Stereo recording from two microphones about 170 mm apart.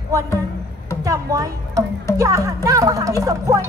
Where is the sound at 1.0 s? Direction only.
20° right (ahead or behind).